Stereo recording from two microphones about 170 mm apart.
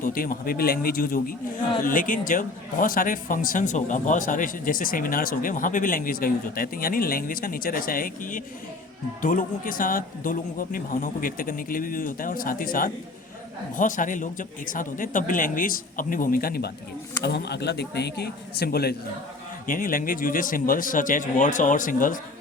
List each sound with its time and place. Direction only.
0.0 s a man's voice: 55° left (ahead or behind)
17.2 s a man's voice: 75° left (ahead or behind)
19.6 s a man's voice: 55° left (ahead or behind)